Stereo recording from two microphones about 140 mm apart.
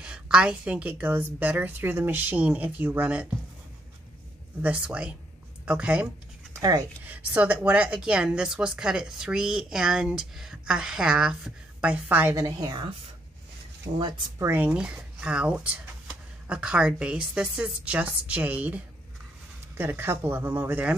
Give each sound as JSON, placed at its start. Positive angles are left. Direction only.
{"t": 0.0, "sound": "speech", "side_deg": -5}
{"t": 4.6, "sound": "speech", "side_deg": -10}
{"t": 6.5, "sound": "a sound", "side_deg": -25}
{"t": 7.1, "sound": "a woman's voice", "side_deg": -10}
{"t": 13.9, "sound": "speech", "side_deg": -50}
{"t": 14.4, "sound": "speech", "side_deg": -15}
{"t": 19.8, "sound": "speech", "side_deg": -15}